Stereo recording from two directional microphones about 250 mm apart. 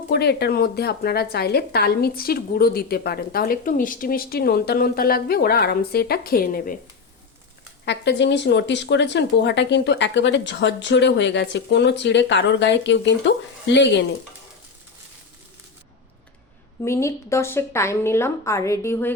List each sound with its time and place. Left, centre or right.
0.1 s speech: left
7.9 s speech: left
16.8 s a woman's voice: centre